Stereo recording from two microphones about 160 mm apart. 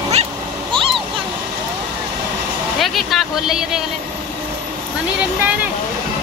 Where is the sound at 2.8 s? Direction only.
Centre (ahead or behind).